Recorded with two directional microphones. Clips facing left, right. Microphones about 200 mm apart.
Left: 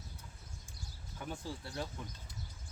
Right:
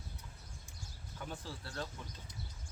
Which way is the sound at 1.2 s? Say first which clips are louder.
Left 3 dB; 15° left (ahead or behind).